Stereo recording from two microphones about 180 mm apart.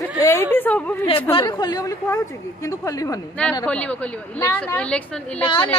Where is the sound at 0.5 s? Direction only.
10° left (ahead or behind).